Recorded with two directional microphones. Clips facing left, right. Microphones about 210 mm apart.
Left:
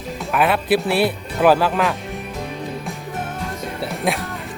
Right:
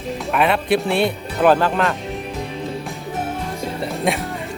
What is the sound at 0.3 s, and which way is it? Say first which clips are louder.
Speech: even; centre (ahead or behind).